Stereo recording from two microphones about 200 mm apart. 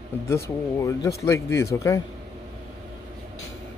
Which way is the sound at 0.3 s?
15° left (ahead or behind).